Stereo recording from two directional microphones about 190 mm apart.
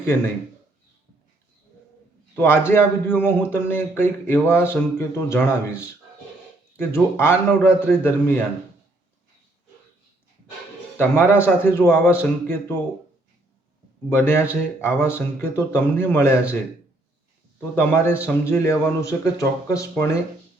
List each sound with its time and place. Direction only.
2.3 s a man's voice: 15° left (ahead or behind)
10.9 s a man's voice: 15° left (ahead or behind)
14.1 s a man's voice: 15° left (ahead or behind)
17.7 s a man's voice: 10° left (ahead or behind)